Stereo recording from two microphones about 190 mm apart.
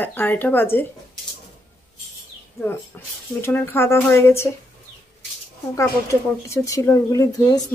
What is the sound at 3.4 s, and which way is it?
Speech, 10° left (ahead or behind).